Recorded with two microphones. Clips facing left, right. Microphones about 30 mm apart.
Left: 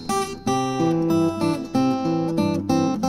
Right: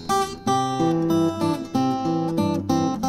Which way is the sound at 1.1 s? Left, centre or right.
Centre.